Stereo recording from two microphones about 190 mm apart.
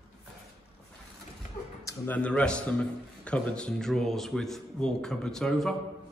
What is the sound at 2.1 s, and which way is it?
A man's voice, 5° left (ahead or behind).